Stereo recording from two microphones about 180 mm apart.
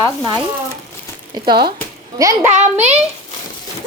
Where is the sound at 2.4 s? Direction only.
40° right (ahead or behind).